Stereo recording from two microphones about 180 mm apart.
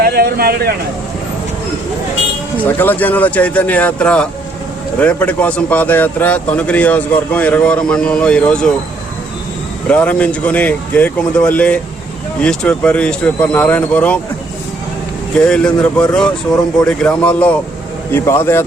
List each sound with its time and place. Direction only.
0.0 s speech: 60° right (ahead or behind)
2.6 s a man's voice: 10° left (ahead or behind)
9.9 s a man's voice: 10° left (ahead or behind)
15.4 s a man's voice: 5° left (ahead or behind)